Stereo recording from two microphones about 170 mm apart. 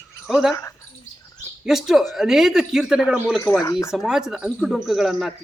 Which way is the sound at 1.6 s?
Centre (ahead or behind).